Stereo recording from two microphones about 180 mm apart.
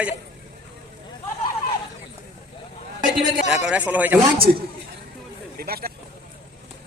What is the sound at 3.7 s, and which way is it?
Speech, 10° right (ahead or behind).